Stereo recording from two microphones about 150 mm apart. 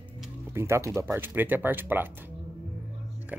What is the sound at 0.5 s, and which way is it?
Speech, 15° right (ahead or behind).